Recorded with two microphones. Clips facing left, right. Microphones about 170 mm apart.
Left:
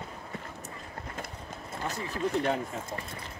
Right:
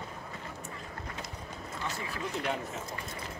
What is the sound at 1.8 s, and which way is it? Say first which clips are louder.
Speech: left 6 dB; 40° left (ahead or behind).